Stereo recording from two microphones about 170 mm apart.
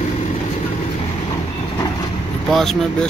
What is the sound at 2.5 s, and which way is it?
Speech, centre (ahead or behind).